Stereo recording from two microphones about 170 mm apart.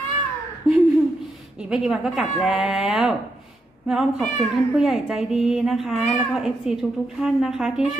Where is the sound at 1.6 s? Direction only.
5° right (ahead or behind).